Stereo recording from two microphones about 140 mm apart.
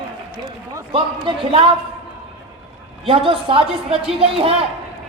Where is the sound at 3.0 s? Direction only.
40° right (ahead or behind).